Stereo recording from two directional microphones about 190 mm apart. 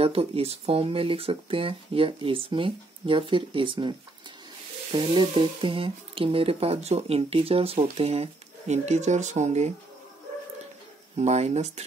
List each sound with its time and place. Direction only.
0.0 s speech: 30° right (ahead or behind)
4.9 s speech: 25° right (ahead or behind)
11.1 s speech: 35° right (ahead or behind)